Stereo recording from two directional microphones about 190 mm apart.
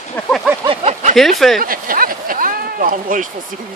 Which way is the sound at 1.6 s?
50° right (ahead or behind).